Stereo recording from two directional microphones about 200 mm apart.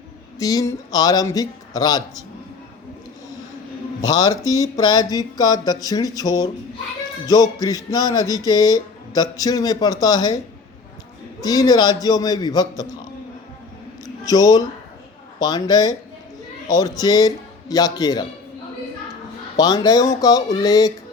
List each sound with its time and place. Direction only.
0.3 s speech: 15° left (ahead or behind)
4.1 s speech: 20° left (ahead or behind)
11.4 s speech: 20° left (ahead or behind)
14.0 s a sound: 20° left (ahead or behind)
15.4 s speech: 20° left (ahead or behind)
17.0 s speech: 20° left (ahead or behind)
19.5 s speech: 20° left (ahead or behind)